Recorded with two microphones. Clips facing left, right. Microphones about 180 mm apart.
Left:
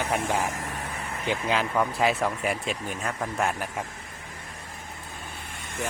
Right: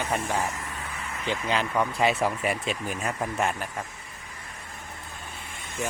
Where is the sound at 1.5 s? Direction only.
5° left (ahead or behind).